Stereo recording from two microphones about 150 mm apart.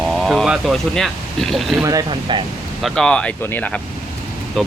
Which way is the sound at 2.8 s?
5° left (ahead or behind).